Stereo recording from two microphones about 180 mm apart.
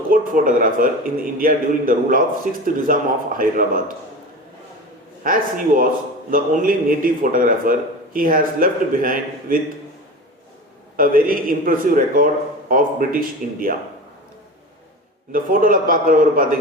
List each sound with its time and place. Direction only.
0.1 s speech: 50° right (ahead or behind)
5.2 s speech: 50° right (ahead or behind)
10.9 s speech: 50° right (ahead or behind)
15.3 s speech: 50° right (ahead or behind)